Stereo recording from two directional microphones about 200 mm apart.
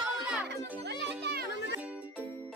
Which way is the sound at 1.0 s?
60° right (ahead or behind).